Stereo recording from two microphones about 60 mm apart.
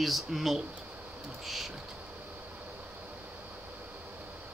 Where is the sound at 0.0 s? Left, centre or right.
Centre.